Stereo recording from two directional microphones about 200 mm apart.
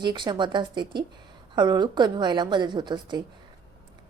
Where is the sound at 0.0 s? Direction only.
20° right (ahead or behind).